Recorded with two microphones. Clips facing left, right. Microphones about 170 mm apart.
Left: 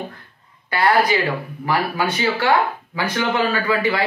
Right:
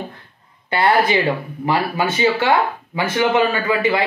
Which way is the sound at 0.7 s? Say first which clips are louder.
Right 1 dB; 25° right (ahead or behind).